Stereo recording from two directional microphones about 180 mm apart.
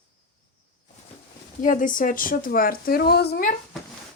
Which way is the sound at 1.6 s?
50° left (ahead or behind).